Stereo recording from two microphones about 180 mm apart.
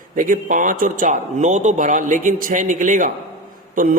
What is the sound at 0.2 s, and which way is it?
A man's voice, 45° right (ahead or behind).